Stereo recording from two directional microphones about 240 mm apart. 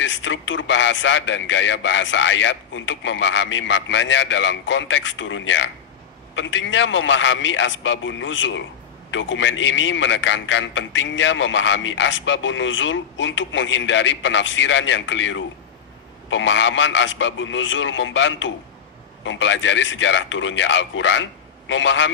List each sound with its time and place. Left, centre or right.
0.0 s a man's voice: left